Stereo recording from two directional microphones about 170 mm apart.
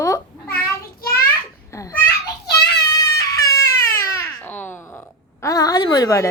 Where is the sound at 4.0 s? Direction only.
15° left (ahead or behind).